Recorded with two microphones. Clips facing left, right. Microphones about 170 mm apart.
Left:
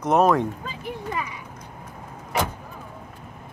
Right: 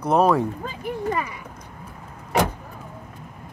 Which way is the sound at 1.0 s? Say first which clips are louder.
Right 5 dB; 45° right (ahead or behind).